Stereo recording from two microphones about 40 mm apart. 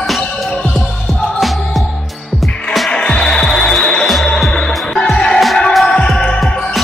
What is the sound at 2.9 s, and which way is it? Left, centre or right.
Music, left.